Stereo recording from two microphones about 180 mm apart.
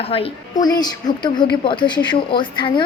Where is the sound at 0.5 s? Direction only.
20° left (ahead or behind).